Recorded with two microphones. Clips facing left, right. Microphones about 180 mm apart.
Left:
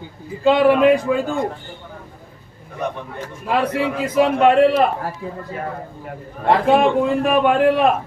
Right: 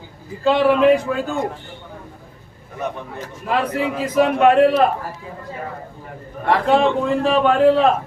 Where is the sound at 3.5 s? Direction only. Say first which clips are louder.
Left 1 dB; 5° left (ahead or behind).